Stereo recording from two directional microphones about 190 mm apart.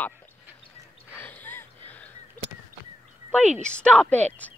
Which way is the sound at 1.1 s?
10° left (ahead or behind).